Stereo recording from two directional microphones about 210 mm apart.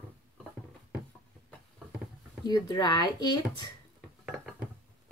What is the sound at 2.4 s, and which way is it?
Speech, 20° left (ahead or behind).